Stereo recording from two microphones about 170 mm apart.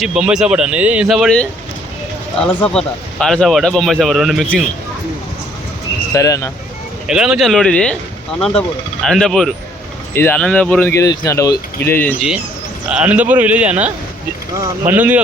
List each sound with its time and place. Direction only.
0.0 s speech: 5° right (ahead or behind)
6.1 s speech: 20° left (ahead or behind)
7.1 s speech: 5° right (ahead or behind)
9.0 s speech: 5° left (ahead or behind)
12.9 s a man's voice: 5° right (ahead or behind)